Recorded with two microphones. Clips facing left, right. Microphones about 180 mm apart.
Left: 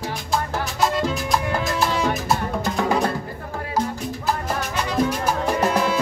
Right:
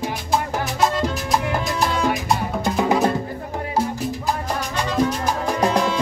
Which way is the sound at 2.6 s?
20° right (ahead or behind).